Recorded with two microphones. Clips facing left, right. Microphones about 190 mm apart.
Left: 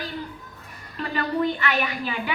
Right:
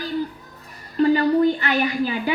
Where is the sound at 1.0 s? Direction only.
40° right (ahead or behind).